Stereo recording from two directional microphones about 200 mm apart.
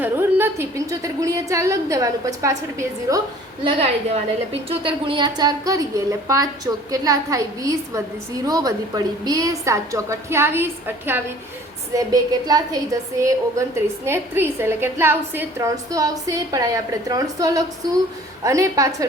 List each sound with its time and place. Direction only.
0.0 s a woman's voice: 10° right (ahead or behind)
3.6 s a woman's voice: 30° right (ahead or behind)